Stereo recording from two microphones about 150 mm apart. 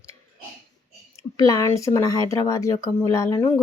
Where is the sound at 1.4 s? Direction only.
20° left (ahead or behind).